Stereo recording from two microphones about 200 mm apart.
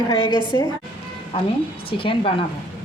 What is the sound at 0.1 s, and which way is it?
Speech, 25° left (ahead or behind).